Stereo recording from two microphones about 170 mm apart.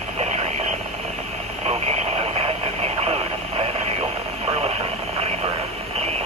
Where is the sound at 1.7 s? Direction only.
40° right (ahead or behind).